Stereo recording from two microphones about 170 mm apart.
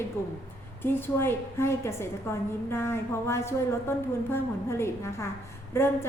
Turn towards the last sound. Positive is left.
turn(degrees=15)  # may be behind; listen again after turning